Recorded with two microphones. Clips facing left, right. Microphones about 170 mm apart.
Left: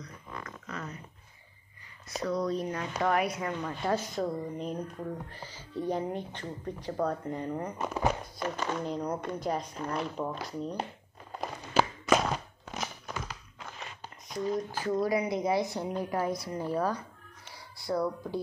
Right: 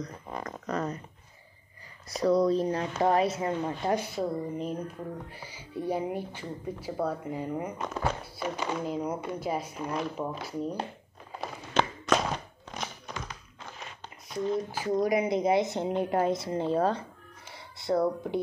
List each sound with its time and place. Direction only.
0.4 s speech: 40° right (ahead or behind)
2.0 s a woman's voice: 35° right (ahead or behind)
3.9 s speech: 10° right (ahead or behind)
7.8 s speech: 10° left (ahead or behind)
8.2 s speech: 5° right (ahead or behind)
11.3 s walk: centre (ahead or behind)
12.6 s crunch: 5° left (ahead or behind)
15.0 s a woman's voice: 20° right (ahead or behind)